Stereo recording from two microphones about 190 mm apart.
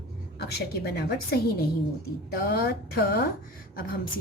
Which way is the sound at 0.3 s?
60° left (ahead or behind).